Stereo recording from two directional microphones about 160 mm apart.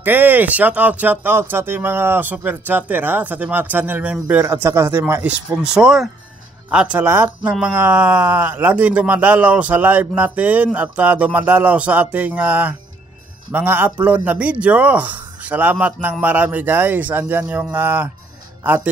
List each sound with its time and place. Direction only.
0.0 s speech: 10° right (ahead or behind)